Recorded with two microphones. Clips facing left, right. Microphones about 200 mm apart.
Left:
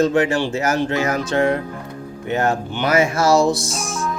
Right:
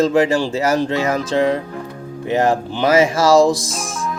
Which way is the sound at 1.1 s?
90° right.